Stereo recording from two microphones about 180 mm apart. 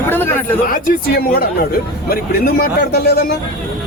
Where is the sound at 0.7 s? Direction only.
55° left (ahead or behind).